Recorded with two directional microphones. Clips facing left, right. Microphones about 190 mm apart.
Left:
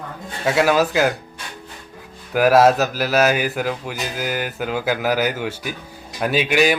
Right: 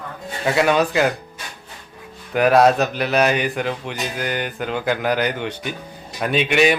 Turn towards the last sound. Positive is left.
turn(degrees=0)  # may be behind; listen again after turning